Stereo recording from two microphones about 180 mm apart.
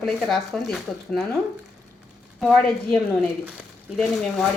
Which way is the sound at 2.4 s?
5° left (ahead or behind).